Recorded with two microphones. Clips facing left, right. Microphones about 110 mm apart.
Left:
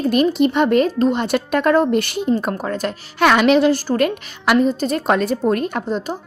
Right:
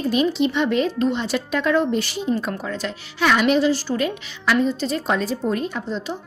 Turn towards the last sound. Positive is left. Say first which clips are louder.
# left 5 dB
turn(degrees=45)  # may be behind; listen again after turning